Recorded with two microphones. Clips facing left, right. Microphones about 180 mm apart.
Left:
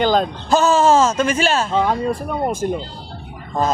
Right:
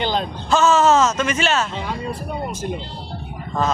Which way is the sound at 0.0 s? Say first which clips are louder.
Left 6 dB; 45° left (ahead or behind).